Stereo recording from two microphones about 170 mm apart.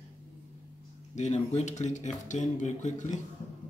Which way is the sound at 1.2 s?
40° left (ahead or behind).